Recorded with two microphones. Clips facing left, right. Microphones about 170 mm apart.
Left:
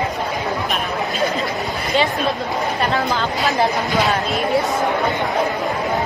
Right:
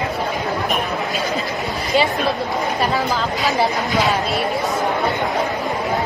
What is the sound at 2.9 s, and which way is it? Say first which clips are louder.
Speech: even; centre (ahead or behind).